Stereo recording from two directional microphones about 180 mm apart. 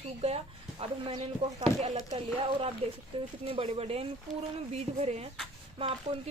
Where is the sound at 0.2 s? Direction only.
35° right (ahead or behind).